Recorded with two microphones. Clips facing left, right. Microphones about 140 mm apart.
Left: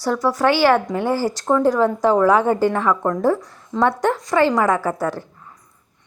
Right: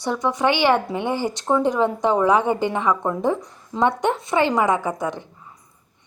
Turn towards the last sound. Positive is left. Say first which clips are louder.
# left 2 dB
turn(degrees=-20)  # may be behind; listen again after turning